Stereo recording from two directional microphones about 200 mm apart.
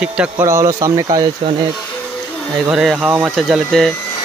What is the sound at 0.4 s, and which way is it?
Speech, 15° right (ahead or behind).